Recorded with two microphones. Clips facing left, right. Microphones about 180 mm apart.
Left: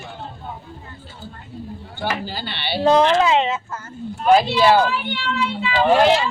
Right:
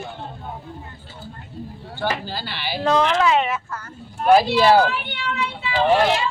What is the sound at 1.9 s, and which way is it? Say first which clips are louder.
Speech: right 1 dB; 15° left (ahead or behind).